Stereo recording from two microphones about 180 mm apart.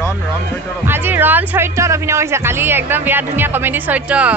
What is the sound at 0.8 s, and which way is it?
A woman's voice, 10° right (ahead or behind).